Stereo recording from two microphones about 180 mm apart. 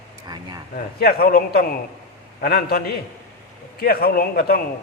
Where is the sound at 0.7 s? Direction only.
55° left (ahead or behind).